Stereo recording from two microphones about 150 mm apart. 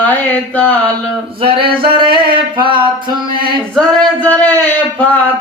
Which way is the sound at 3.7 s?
5° left (ahead or behind).